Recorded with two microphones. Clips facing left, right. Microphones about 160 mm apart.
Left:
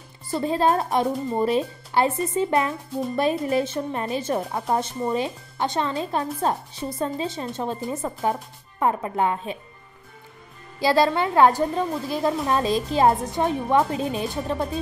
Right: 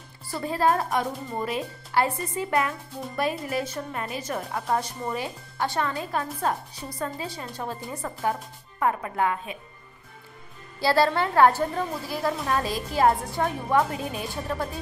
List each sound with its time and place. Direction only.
0.3 s a woman's voice: 20° left (ahead or behind)
10.8 s a woman's voice: 15° left (ahead or behind)